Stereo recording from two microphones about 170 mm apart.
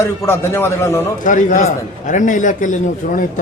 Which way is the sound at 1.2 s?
50° left (ahead or behind).